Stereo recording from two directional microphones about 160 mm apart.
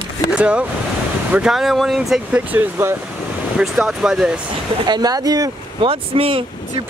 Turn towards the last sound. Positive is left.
turn(degrees=-35)  # may be behind; listen again after turning